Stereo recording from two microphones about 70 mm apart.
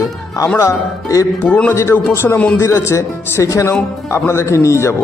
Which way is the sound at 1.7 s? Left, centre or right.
Left.